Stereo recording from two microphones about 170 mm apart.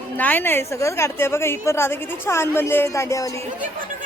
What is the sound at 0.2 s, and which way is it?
Speech, 10° left (ahead or behind).